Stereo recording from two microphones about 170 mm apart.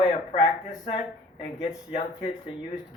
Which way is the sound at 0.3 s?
35° left (ahead or behind).